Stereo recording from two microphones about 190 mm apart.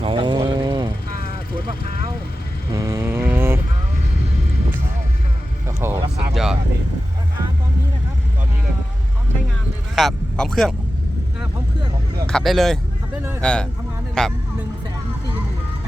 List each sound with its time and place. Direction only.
0.0 s vehicle: 25° right (ahead or behind)
2.7 s vehicle: 15° right (ahead or behind)
5.6 s vehicle: 15° right (ahead or behind)
6.3 s vehicle: centre (ahead or behind)
9.9 s speech: centre (ahead or behind)
12.2 s a man's voice: centre (ahead or behind)